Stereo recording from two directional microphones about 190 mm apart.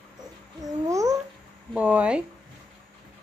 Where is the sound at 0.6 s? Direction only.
15° right (ahead or behind).